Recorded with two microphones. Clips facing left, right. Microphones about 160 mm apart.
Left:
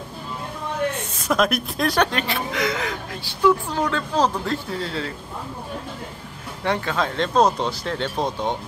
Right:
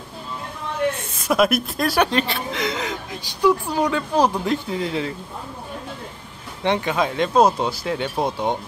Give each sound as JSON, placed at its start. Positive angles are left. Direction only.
{"t": 1.2, "sound": "speech", "side_deg": -10}
{"t": 2.0, "sound": "speech", "side_deg": -25}
{"t": 6.6, "sound": "speech", "side_deg": -20}